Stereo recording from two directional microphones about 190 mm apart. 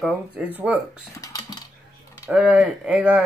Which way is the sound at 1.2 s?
20° left (ahead or behind).